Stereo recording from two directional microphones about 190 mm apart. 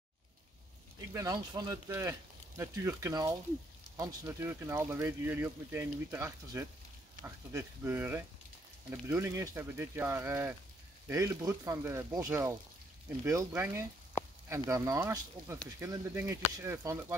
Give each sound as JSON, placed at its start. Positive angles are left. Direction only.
{"t": 1.1, "sound": "speech", "side_deg": -20}